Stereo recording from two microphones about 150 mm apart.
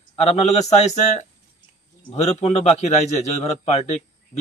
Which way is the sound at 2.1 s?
45° left (ahead or behind).